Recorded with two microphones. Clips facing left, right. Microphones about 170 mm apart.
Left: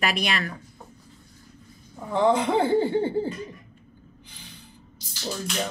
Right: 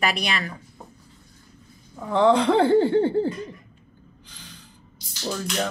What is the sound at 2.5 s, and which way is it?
Speech, 15° left (ahead or behind).